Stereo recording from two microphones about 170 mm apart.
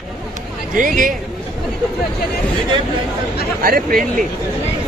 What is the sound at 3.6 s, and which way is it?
Speech, 55° right (ahead or behind).